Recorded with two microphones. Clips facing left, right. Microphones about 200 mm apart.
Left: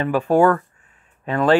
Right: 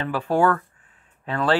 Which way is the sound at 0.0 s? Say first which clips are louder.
Left 5 dB; 15° left (ahead or behind).